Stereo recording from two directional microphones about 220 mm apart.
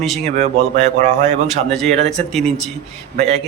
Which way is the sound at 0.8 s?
30° right (ahead or behind).